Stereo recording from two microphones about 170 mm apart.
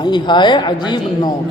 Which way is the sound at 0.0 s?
25° left (ahead or behind).